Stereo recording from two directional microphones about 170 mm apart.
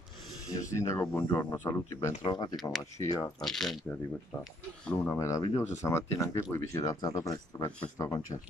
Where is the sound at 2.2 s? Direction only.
25° left (ahead or behind).